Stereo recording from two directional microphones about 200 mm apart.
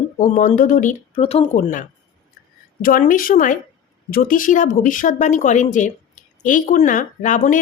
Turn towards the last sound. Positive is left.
turn(degrees=40)  # may be behind; listen again after turning